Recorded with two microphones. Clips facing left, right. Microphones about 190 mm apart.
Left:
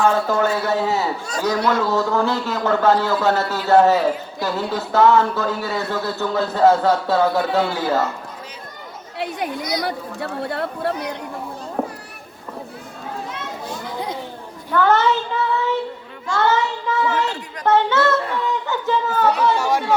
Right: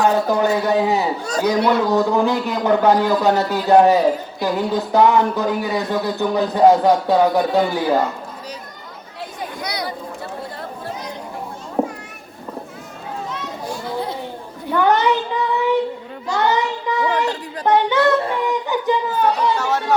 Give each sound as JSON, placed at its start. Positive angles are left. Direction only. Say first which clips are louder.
{"t": 0.3, "sound": "a man's voice", "louder": "right 2 dB", "side_deg": -20}
{"t": 9.1, "sound": "chatter", "louder": "left 5 dB", "side_deg": 70}
{"t": 9.8, "sound": "speech", "louder": "left 2 dB", "side_deg": 70}
{"t": 11.8, "sound": "children playing", "louder": "right 4 dB", "side_deg": -15}
{"t": 13.7, "sound": "children playing", "louder": "right 4 dB", "side_deg": 20}
{"t": 14.7, "sound": "a man's voice", "louder": "right 1 dB", "side_deg": -15}
{"t": 19.5, "sound": "speech", "louder": "left 1 dB", "side_deg": 10}